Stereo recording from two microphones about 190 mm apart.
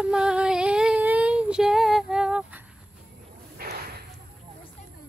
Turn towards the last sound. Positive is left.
turn(degrees=-55)  # may be behind; listen again after turning